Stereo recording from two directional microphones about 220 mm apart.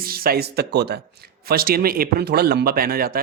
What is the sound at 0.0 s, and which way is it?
A man's voice, 45° right (ahead or behind).